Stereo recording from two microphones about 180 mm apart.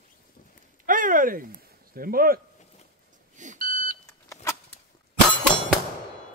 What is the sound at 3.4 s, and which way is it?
Beep, 45° right (ahead or behind).